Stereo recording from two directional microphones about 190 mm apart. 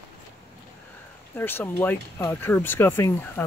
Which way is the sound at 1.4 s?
10° left (ahead or behind).